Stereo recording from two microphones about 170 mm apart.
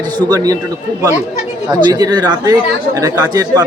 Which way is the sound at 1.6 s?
20° right (ahead or behind).